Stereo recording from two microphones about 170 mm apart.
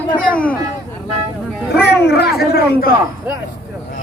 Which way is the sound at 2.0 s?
70° left (ahead or behind).